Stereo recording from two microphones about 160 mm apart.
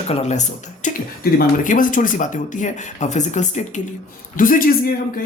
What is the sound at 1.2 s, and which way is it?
Speech, 65° left (ahead or behind).